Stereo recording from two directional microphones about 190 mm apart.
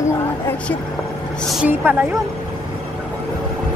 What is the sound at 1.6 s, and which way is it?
Speech, 10° right (ahead or behind).